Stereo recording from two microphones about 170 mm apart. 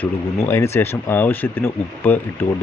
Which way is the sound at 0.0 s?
10° left (ahead or behind).